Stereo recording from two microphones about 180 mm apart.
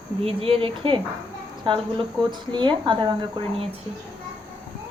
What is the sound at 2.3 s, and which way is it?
Speech, 25° right (ahead or behind).